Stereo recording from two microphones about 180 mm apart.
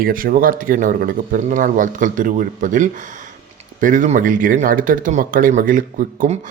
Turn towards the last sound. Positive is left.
turn(degrees=-45)  # may be behind; listen again after turning